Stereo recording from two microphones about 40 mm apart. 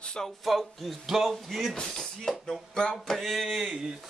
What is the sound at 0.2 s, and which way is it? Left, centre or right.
Speech, centre.